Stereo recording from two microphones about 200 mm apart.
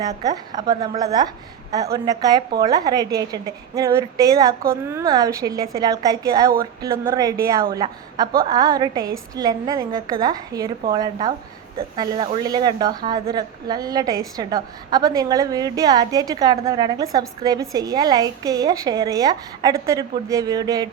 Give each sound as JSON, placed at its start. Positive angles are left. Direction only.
{"t": 0.0, "sound": "a woman's voice", "side_deg": -20}